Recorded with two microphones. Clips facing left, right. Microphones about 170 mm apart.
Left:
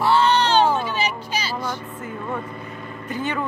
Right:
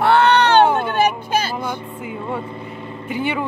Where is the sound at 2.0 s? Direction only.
10° right (ahead or behind).